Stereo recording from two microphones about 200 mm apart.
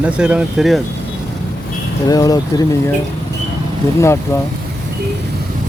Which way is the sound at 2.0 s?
15° left (ahead or behind).